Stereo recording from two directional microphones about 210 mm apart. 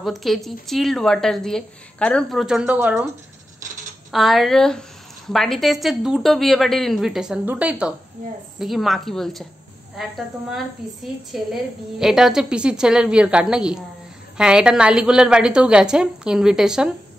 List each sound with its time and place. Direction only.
0.0 s a woman's voice: centre (ahead or behind)
4.1 s a woman's voice: centre (ahead or behind)